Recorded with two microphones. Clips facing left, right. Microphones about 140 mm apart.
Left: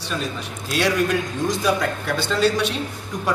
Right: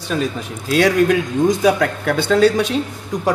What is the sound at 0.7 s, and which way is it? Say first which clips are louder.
Speech: right 6 dB; 50° right (ahead or behind).